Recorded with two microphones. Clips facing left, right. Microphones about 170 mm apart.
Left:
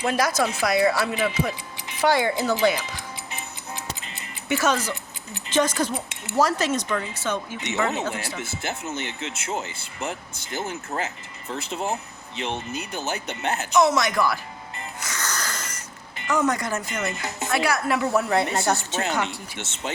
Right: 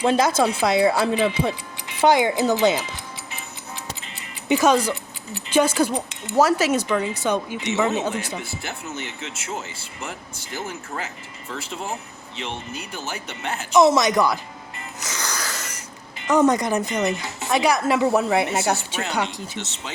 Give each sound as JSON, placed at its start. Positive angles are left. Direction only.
{"t": 0.0, "sound": "speech", "side_deg": -25}
{"t": 2.0, "sound": "speech", "side_deg": -20}
{"t": 4.4, "sound": "a woman's voice", "side_deg": -15}
{"t": 8.4, "sound": "speech", "side_deg": 20}
{"t": 13.7, "sound": "speech", "side_deg": -20}
{"t": 15.0, "sound": "wheeze", "side_deg": -15}
{"t": 16.2, "sound": "a woman's voice", "side_deg": -20}
{"t": 19.5, "sound": "speech", "side_deg": 55}